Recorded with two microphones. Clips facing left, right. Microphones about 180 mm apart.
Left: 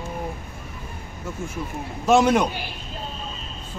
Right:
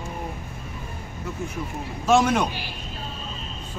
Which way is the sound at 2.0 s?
10° left (ahead or behind).